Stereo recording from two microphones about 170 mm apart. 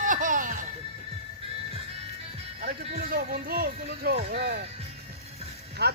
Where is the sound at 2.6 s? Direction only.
60° right (ahead or behind); by 4.7 s 75° right (ahead or behind).